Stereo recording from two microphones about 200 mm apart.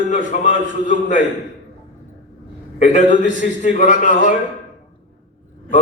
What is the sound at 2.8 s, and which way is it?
A man's voice, 40° left (ahead or behind).